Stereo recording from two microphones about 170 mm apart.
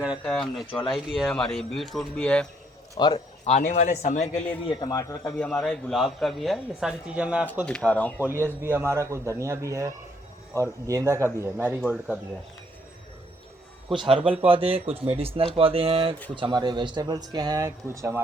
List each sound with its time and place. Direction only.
0.3 s speech: centre (ahead or behind)
2.9 s a man's voice: 25° left (ahead or behind)
3.4 s speech: 45° left (ahead or behind)
4.8 s a man's voice: 20° left (ahead or behind)
5.5 s speech: 5° left (ahead or behind)
7.6 s a man's voice: 5° left (ahead or behind)
8.2 s speech: 15° right (ahead or behind)
13.9 s speech: centre (ahead or behind)
14.3 s speech: 30° right (ahead or behind); by 18.2 s 15° right (ahead or behind)